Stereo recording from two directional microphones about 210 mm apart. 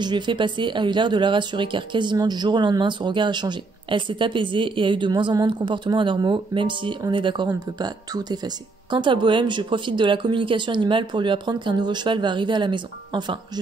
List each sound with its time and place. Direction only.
0.0 s speech: 20° right (ahead or behind)